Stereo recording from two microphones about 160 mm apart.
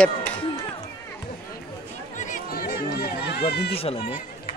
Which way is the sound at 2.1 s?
55° left (ahead or behind).